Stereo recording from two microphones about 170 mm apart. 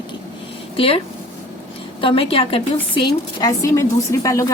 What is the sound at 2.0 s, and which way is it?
A woman's voice, 30° left (ahead or behind).